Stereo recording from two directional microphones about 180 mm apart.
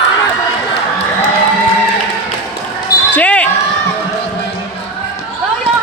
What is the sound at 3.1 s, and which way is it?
Basketball bounce, 10° left (ahead or behind).